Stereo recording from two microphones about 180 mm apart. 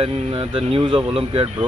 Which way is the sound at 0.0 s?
30° right (ahead or behind).